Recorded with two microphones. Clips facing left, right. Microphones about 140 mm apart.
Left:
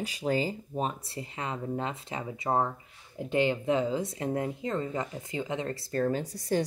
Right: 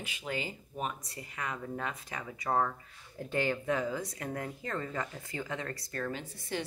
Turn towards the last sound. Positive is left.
turn(degrees=40)  # may be behind; listen again after turning